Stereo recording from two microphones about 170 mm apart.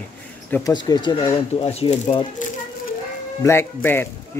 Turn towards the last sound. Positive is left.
turn(degrees=15)  # may be behind; listen again after turning